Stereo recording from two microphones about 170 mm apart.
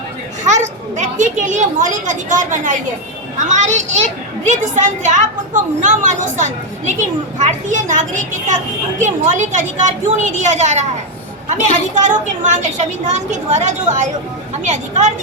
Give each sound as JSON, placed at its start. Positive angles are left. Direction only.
{"t": 0.4, "sound": "a woman's voice", "side_deg": -45}
{"t": 12.0, "sound": "a woman's voice", "side_deg": -45}